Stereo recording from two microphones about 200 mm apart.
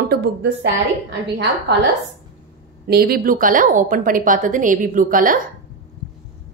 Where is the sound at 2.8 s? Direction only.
50° right (ahead or behind).